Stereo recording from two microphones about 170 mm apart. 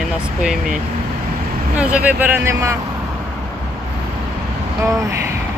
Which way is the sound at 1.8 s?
5° right (ahead or behind).